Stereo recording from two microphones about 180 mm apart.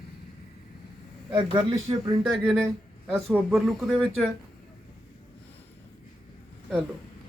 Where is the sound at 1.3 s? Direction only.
25° right (ahead or behind).